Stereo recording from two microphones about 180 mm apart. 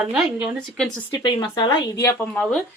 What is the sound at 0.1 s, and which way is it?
Speech, 5° right (ahead or behind).